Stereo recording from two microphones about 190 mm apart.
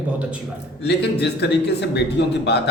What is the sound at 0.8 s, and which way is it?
A man's voice, 60° left (ahead or behind).